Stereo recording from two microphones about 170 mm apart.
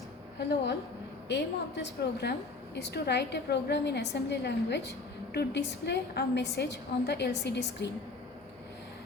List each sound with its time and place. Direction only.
0.3 s a woman's voice: 80° left